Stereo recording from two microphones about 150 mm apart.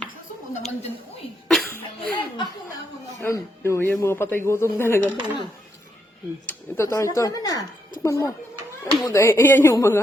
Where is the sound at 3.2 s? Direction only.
20° left (ahead or behind).